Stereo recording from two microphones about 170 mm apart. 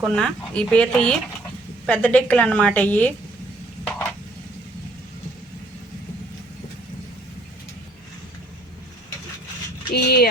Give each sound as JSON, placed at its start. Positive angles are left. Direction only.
{"t": 0.1, "sound": "a woman's voice", "side_deg": 5}
{"t": 3.8, "sound": "a sound", "side_deg": 10}
{"t": 9.9, "sound": "speech", "side_deg": 70}